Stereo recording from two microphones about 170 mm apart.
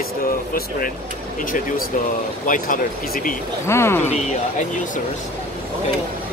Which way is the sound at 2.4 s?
50° left (ahead or behind).